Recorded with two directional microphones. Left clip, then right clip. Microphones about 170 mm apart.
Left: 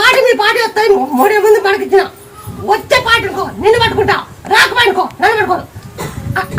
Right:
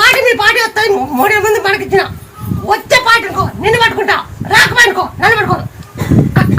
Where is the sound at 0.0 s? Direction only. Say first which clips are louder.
Right 1 dB; 10° left (ahead or behind).